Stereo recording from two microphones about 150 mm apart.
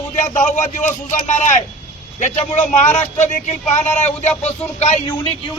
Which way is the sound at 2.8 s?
50° left (ahead or behind).